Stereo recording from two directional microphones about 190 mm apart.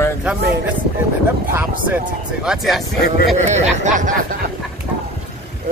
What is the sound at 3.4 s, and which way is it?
Speech, 35° right (ahead or behind).